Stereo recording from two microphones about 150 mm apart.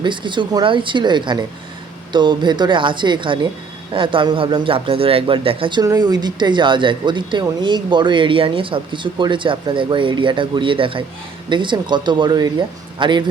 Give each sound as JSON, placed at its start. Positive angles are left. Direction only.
{"t": 0.0, "sound": "speech", "side_deg": -30}